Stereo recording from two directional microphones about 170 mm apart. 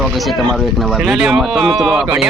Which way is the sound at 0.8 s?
Centre (ahead or behind).